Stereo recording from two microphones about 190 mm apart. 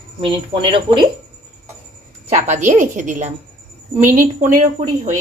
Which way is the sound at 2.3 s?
35° right (ahead or behind).